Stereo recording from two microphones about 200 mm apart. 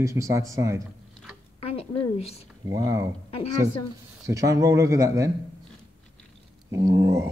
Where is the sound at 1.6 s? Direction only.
30° left (ahead or behind).